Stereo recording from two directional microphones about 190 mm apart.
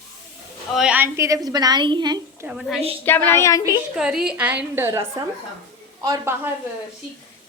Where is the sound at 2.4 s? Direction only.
5° right (ahead or behind).